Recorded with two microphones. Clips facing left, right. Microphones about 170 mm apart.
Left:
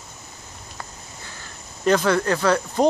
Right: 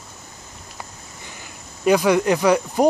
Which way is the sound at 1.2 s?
15° right (ahead or behind).